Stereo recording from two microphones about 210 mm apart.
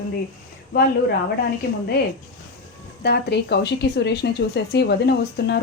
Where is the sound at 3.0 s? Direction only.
50° left (ahead or behind).